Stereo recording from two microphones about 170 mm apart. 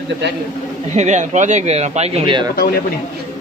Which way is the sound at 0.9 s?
45° right (ahead or behind).